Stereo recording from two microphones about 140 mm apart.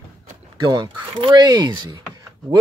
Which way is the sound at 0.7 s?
35° right (ahead or behind).